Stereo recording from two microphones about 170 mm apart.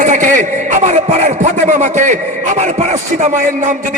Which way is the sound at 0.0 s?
50° right (ahead or behind).